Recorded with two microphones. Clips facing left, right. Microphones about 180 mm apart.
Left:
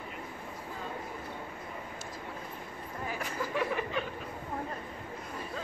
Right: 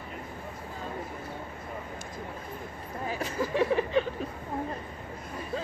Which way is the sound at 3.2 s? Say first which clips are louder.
Right 6 dB; 30° right (ahead or behind).